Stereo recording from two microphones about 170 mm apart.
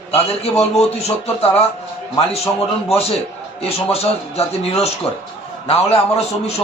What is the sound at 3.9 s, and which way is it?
A man's voice, 35° left (ahead or behind).